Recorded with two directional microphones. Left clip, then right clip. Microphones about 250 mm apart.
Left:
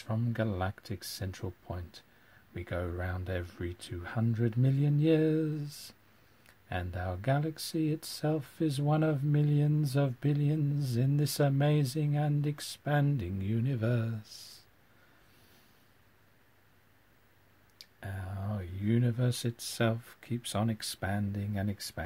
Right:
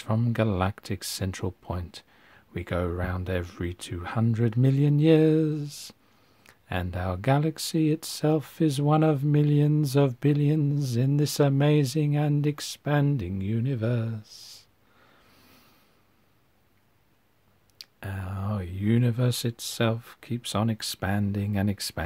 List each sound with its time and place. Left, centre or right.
0.0 s speech: right
17.7 s speech: right